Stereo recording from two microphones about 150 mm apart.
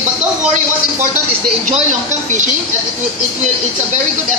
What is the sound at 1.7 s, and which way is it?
Speech, 55° right (ahead or behind).